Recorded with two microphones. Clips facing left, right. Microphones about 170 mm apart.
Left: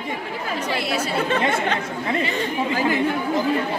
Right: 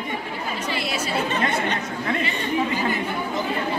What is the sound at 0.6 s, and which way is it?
Speech, 60° left (ahead or behind).